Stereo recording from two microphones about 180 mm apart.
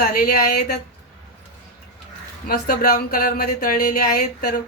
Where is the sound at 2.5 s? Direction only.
55° left (ahead or behind).